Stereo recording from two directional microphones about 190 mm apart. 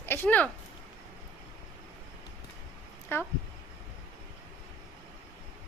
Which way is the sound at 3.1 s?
15° left (ahead or behind).